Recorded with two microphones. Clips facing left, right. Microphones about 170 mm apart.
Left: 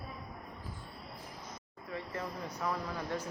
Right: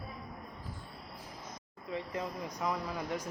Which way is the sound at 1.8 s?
20° right (ahead or behind).